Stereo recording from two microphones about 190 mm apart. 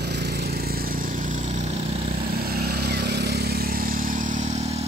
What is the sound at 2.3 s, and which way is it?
Vehicle, 55° right (ahead or behind).